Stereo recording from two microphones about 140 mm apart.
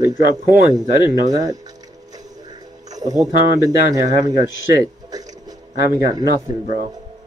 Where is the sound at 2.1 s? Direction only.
25° right (ahead or behind).